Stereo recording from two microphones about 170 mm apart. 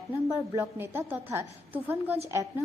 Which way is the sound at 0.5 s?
15° right (ahead or behind).